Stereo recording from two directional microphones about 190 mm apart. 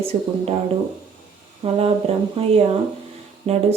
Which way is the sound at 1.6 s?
30° right (ahead or behind).